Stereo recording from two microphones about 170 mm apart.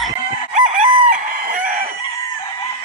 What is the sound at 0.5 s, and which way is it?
Chicken, 45° right (ahead or behind).